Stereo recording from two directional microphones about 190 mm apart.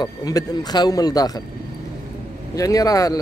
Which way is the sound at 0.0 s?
20° left (ahead or behind).